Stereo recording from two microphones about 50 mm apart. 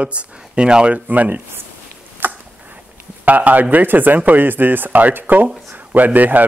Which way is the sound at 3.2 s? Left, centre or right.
Right.